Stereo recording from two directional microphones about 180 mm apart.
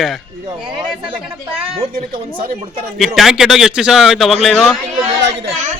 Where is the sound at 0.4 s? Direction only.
25° right (ahead or behind).